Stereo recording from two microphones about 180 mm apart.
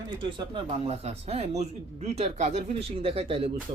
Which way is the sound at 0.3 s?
30° right (ahead or behind).